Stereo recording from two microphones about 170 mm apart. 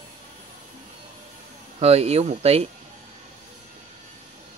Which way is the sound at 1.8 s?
40° right (ahead or behind).